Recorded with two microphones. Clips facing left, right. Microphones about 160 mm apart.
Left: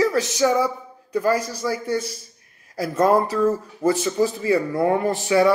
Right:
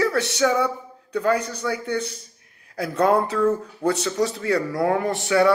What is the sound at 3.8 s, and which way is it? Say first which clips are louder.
Speech: left 3 dB; 75° right (ahead or behind).